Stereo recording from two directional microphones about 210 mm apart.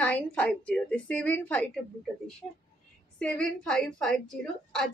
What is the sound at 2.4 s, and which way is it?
Speech, 25° left (ahead or behind).